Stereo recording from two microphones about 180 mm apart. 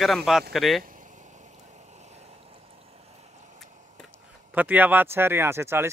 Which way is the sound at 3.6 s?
45° right (ahead or behind).